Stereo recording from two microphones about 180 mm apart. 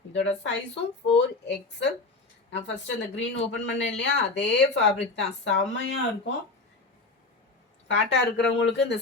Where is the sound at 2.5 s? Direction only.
80° left.